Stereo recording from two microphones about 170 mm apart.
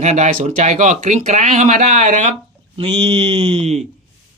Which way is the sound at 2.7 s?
35° right (ahead or behind).